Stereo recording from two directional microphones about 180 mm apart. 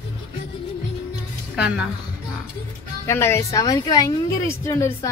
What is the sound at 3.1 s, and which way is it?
A woman's voice, 15° left (ahead or behind).